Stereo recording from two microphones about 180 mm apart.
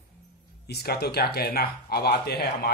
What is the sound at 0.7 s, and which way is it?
Speech, 60° left (ahead or behind).